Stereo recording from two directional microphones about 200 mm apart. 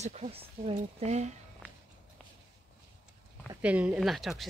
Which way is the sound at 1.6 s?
5° left (ahead or behind).